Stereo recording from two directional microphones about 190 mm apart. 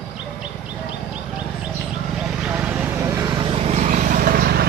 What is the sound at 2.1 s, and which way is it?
Vehicle, 5° right (ahead or behind).